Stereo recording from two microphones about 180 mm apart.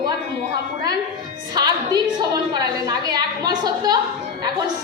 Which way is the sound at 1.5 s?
20° right (ahead or behind).